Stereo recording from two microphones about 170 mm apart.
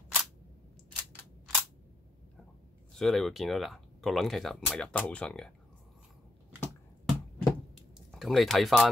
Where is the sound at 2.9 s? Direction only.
Centre (ahead or behind).